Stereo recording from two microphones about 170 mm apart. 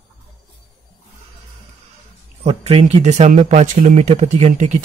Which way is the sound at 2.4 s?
35° right (ahead or behind).